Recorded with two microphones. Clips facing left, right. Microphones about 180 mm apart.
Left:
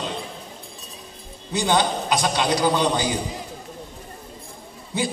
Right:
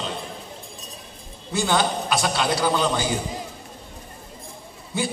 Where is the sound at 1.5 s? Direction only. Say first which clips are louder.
Left 1 dB; 20° left (ahead or behind).